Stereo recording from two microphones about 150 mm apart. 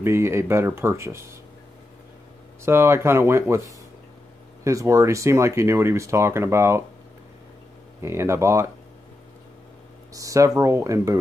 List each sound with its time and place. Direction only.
0.0 s speech: 15° right (ahead or behind)
2.6 s speech: 15° right (ahead or behind)
4.6 s speech: 20° right (ahead or behind)
8.0 s speech: 15° right (ahead or behind)
10.1 s speech: 20° right (ahead or behind)